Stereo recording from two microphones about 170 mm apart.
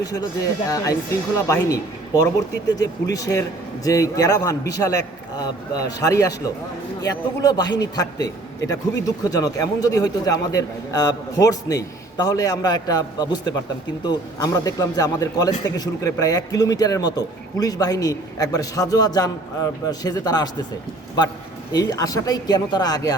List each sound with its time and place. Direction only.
0.0 s a man's voice: 20° left (ahead or behind)
21.7 s a man's voice: 25° left (ahead or behind)